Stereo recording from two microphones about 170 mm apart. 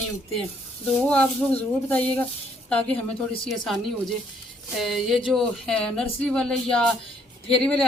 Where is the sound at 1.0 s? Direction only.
10° left (ahead or behind).